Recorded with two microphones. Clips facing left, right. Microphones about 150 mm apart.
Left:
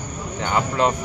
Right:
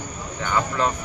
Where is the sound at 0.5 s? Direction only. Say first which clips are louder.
Left 3 dB; 20° left (ahead or behind).